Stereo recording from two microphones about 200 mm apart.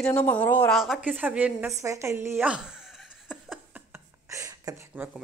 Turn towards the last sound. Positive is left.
turn(degrees=-15)  # may be behind; listen again after turning